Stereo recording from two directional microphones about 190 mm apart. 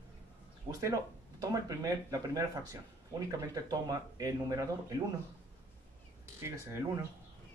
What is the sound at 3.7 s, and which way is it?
Speech, 20° right (ahead or behind).